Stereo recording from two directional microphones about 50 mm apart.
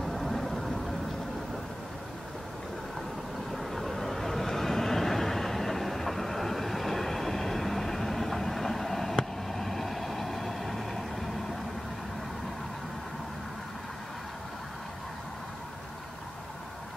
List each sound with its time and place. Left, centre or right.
0.0 s vehicle: centre
3.5 s vehicle: centre